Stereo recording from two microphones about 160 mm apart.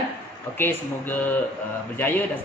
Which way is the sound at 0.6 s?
10° left (ahead or behind).